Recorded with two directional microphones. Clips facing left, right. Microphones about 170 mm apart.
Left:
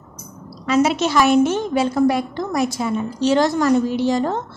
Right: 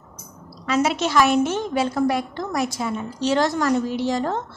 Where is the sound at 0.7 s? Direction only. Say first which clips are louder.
Left 4 dB; 20° left (ahead or behind).